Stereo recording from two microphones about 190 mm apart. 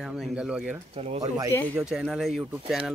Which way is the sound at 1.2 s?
15° right (ahead or behind).